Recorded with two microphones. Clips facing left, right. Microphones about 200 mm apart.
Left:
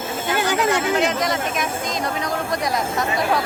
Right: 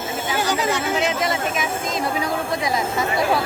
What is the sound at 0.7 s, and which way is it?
Speech, centre (ahead or behind).